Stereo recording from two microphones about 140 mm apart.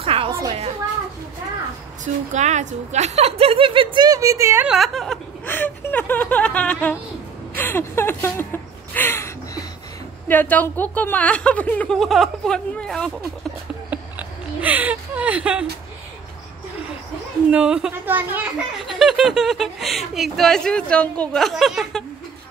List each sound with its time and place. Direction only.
0.0 s music: 40° right (ahead or behind)
2.3 s a woman's voice: 55° right (ahead or behind); by 4.6 s 20° right (ahead or behind)
4.6 s speech: centre (ahead or behind)
5.5 s speech: 15° left (ahead or behind)
7.5 s a sound: 15° left (ahead or behind)
10.2 s a woman's voice: 15° left (ahead or behind)
13.8 s a sound: 10° right (ahead or behind)
17.5 s a woman's voice: 5° right (ahead or behind)
18.9 s speech: centre (ahead or behind)